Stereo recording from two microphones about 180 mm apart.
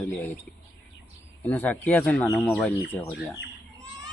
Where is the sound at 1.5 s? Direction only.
10° left (ahead or behind).